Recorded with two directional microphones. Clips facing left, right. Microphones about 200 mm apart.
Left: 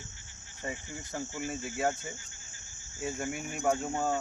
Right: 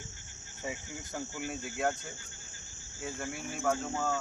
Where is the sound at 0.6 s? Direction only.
Centre (ahead or behind).